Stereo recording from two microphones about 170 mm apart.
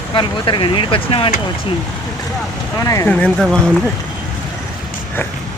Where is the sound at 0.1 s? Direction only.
30° left (ahead or behind).